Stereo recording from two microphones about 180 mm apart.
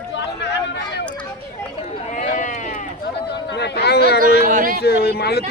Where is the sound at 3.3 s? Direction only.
70° left (ahead or behind).